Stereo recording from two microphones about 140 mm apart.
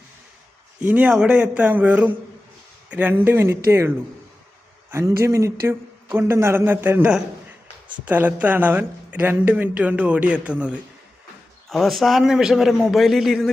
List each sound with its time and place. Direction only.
0.8 s a man's voice: 10° right (ahead or behind)